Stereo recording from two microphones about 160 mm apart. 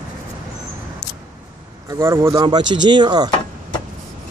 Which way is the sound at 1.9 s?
20° right (ahead or behind).